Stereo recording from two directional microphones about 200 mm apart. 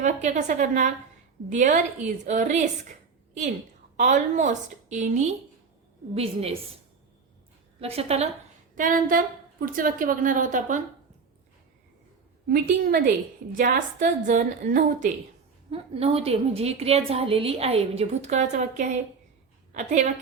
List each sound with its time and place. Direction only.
0.0 s speech: 35° right (ahead or behind)
3.9 s a woman's voice: 35° right (ahead or behind)
7.8 s speech: 30° right (ahead or behind)
8.7 s a woman's voice: 45° right (ahead or behind)
12.5 s a woman's voice: 45° right (ahead or behind)
15.7 s a woman's voice: 30° right (ahead or behind)